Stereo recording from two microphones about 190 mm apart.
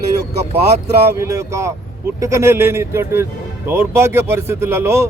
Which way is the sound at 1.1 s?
15° right (ahead or behind).